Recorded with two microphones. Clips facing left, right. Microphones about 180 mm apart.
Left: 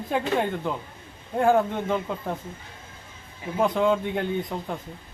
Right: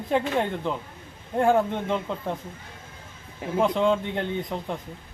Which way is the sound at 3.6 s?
5° left (ahead or behind).